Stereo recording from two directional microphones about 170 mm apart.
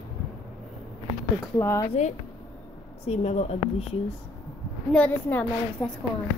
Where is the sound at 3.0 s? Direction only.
40° left (ahead or behind).